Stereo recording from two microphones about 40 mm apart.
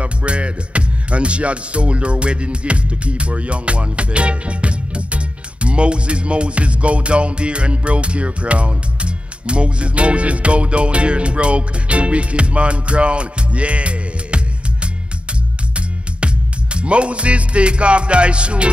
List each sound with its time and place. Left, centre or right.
0.0 s music: right
16.7 s music: right